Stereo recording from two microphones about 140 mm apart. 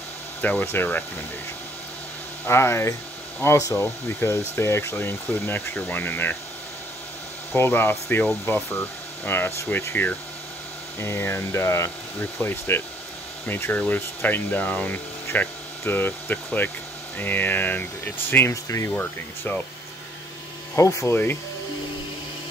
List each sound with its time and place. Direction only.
0.4 s speech: 10° left (ahead or behind)
2.4 s speech: 20° left (ahead or behind)
7.5 s speech: 15° left (ahead or behind)
20.7 s speech: 20° left (ahead or behind)